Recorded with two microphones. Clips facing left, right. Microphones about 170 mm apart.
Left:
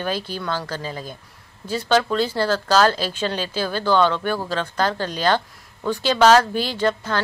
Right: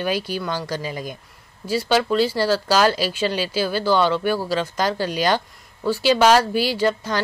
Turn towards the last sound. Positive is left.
turn(degrees=-10)  # may be behind; listen again after turning